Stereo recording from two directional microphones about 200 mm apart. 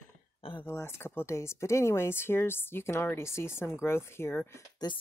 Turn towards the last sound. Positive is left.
turn(degrees=15)  # may be behind; listen again after turning